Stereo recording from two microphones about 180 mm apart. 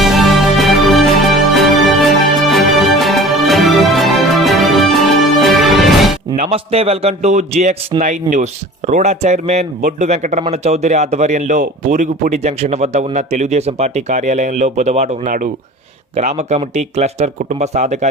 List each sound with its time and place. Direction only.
0.0 s music: centre (ahead or behind)
6.3 s speech: 40° right (ahead or behind)